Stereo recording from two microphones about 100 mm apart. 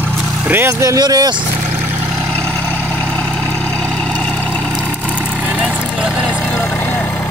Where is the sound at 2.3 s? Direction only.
15° left (ahead or behind).